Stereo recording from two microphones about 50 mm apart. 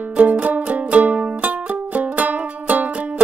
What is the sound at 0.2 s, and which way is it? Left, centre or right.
Music, right.